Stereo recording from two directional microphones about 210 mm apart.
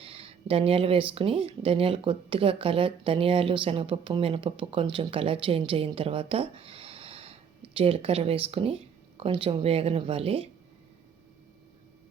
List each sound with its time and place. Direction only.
0.0 s speech: 25° right (ahead or behind)